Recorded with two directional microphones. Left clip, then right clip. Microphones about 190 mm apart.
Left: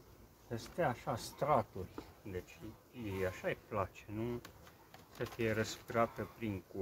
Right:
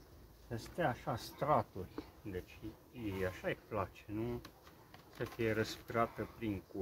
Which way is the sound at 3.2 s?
Centre (ahead or behind).